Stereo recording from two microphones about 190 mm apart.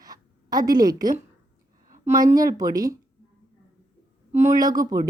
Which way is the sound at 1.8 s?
40° right (ahead or behind).